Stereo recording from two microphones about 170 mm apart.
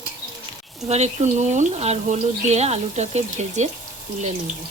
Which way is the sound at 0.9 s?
40° right (ahead or behind).